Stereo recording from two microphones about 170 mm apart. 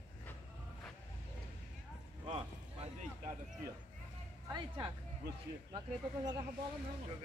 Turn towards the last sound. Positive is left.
turn(degrees=-25)  # may be behind; listen again after turning